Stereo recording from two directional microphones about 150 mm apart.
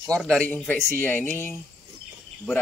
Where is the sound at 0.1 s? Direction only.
5° left (ahead or behind).